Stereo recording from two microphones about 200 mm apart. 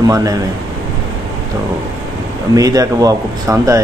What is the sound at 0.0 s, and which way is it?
Speech, 15° right (ahead or behind).